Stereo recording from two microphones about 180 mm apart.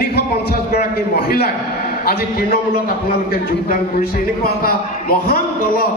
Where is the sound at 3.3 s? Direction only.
55° left (ahead or behind).